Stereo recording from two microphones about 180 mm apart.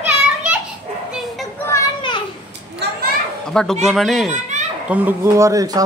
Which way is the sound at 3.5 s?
5° left (ahead or behind).